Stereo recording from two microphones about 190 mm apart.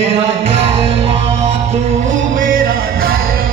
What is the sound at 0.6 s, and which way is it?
Music, 30° right (ahead or behind).